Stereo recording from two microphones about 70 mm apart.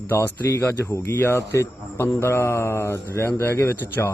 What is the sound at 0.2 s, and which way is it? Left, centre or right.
A man's voice, left.